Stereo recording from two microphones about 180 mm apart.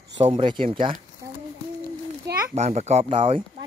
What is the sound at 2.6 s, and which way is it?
Speech, 40° right (ahead or behind).